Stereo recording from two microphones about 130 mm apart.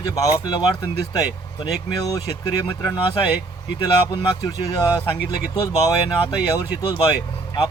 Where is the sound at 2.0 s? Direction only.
30° left (ahead or behind).